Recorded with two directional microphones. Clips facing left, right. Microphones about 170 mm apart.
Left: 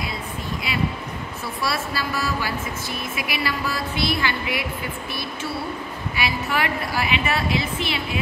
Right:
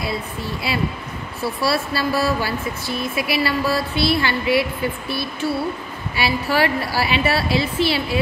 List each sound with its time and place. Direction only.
1.4 s speech: 30° right (ahead or behind)
6.1 s a woman's voice: 30° right (ahead or behind)